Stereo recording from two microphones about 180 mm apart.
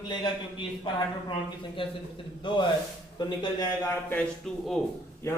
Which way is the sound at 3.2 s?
25° left (ahead or behind).